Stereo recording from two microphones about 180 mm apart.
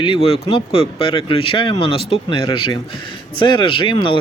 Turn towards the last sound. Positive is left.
turn(degrees=25)  # may be behind; listen again after turning